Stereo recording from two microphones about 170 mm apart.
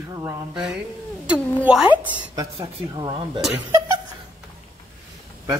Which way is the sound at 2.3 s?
25° right (ahead or behind).